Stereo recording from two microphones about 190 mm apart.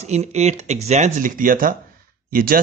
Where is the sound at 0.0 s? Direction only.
35° right (ahead or behind).